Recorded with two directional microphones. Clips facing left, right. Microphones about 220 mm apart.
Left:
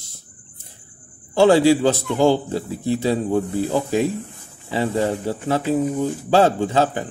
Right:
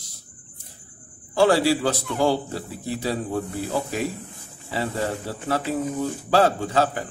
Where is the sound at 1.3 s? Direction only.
25° left (ahead or behind).